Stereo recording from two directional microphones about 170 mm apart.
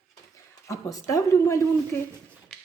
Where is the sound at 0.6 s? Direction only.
20° left (ahead or behind).